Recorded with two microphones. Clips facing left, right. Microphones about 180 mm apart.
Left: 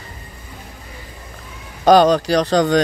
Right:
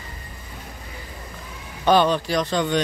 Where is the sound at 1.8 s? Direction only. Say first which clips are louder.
Left 6 dB; 40° left (ahead or behind).